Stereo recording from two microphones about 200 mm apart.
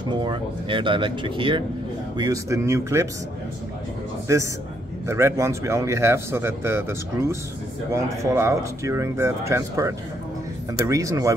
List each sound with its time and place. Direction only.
0.1 s a man's voice: 25° right (ahead or behind)
5.0 s a man's voice: 15° right (ahead or behind)